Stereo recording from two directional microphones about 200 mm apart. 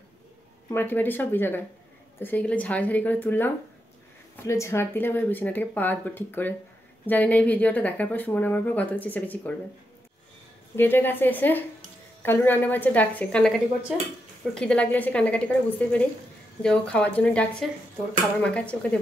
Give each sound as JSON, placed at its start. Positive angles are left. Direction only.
{"t": 0.7, "sound": "speech", "side_deg": 10}
{"t": 10.8, "sound": "speech", "side_deg": 10}